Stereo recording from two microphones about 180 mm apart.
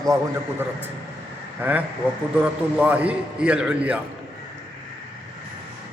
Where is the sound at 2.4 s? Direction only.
10° right (ahead or behind).